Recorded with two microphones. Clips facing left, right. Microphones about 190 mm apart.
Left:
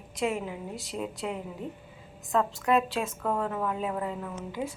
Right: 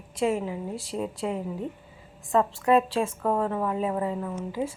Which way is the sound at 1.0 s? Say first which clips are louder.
Right 4 dB; 35° right (ahead or behind).